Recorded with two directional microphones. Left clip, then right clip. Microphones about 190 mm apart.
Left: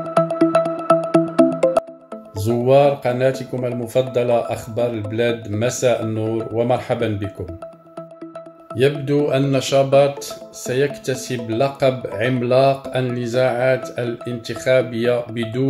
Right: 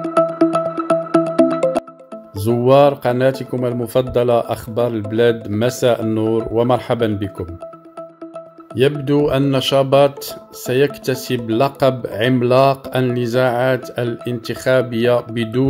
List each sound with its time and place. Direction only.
0.1 s music: centre (ahead or behind)
2.4 s speech: 45° right (ahead or behind)
8.7 s speech: 45° right (ahead or behind)